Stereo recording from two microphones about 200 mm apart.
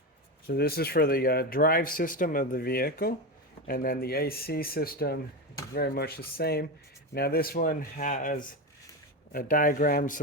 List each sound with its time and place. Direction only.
0.4 s speech: 50° left (ahead or behind)